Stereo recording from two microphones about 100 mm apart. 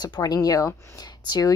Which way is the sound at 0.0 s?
40° left (ahead or behind).